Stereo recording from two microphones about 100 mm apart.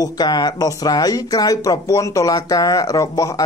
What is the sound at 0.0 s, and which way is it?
Speech, 45° left (ahead or behind).